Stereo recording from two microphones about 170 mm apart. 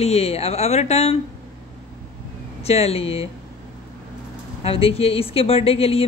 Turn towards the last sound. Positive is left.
turn(degrees=35)  # may be behind; listen again after turning